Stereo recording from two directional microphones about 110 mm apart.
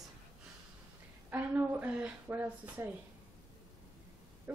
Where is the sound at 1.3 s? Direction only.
20° right (ahead or behind).